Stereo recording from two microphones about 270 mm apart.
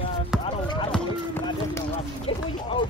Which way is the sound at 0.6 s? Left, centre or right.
Centre.